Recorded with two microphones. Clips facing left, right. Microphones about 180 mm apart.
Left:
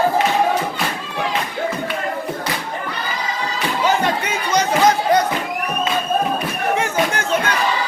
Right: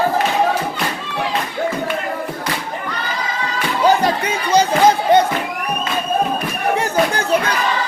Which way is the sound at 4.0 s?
30° right (ahead or behind).